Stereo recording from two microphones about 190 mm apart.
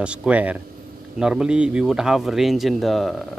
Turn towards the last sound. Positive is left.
turn(degrees=0)  # may be behind; listen again after turning